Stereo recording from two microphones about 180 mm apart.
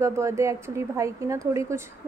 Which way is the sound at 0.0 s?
15° right (ahead or behind).